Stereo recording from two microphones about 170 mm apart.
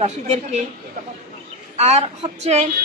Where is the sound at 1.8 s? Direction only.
40° right (ahead or behind).